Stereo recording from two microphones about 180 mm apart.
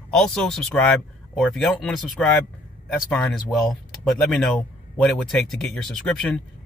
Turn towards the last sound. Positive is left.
turn(degrees=5)  # may be behind; listen again after turning